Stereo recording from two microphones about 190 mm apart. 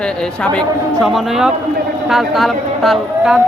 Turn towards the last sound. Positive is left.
turn(degrees=0)  # may be behind; listen again after turning